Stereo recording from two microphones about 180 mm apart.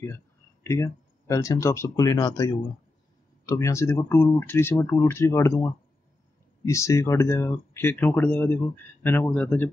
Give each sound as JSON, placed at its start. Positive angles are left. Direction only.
{"t": 0.7, "sound": "speech", "side_deg": 15}